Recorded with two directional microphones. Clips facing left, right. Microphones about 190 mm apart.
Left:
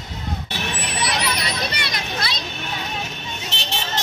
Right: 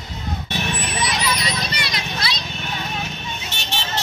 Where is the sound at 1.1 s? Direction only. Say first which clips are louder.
Even; 60° left (ahead or behind).